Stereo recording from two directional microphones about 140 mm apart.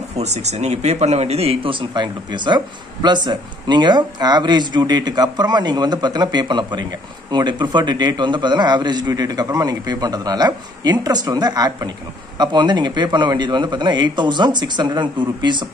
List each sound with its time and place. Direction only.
0.2 s speech: 50° right (ahead or behind); by 15.6 s 35° right (ahead or behind)